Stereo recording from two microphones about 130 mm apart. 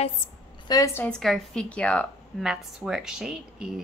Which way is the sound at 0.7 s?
30° left (ahead or behind).